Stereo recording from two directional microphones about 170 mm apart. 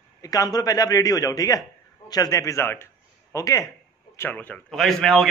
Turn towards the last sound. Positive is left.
turn(degrees=0)  # may be behind; listen again after turning